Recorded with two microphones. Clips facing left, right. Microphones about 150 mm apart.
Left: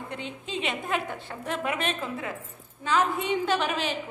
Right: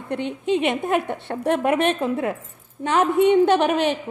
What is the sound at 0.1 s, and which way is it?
A woman's voice, 60° right (ahead or behind).